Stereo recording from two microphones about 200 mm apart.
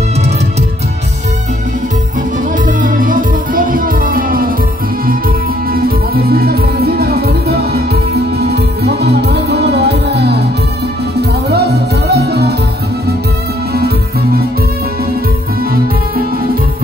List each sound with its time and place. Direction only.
2.6 s music: 40° right (ahead or behind)
5.7 s music: 50° right (ahead or behind)